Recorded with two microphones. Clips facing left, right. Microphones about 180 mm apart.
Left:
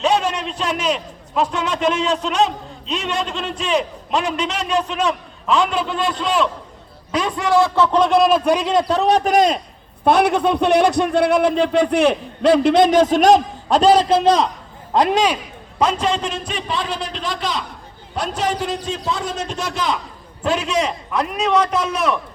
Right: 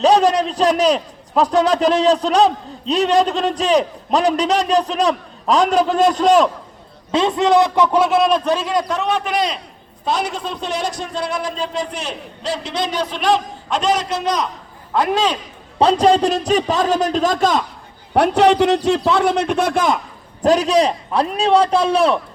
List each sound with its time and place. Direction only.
0.0 s a man's voice: 35° right (ahead or behind)
7.1 s a man's voice: 25° right (ahead or behind); by 8.4 s centre (ahead or behind)
8.4 s a man's voice: 20° left (ahead or behind); by 9.6 s 45° left (ahead or behind)
10.0 s a man's voice: 60° left (ahead or behind); by 14.4 s 30° left (ahead or behind)
14.9 s a man's voice: 15° left (ahead or behind)
15.8 s a man's voice: 35° right (ahead or behind)
18.1 s a man's voice: 65° right (ahead or behind)
20.4 s a man's voice: 40° right (ahead or behind)